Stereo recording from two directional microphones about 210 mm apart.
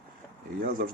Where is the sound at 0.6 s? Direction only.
40° right (ahead or behind).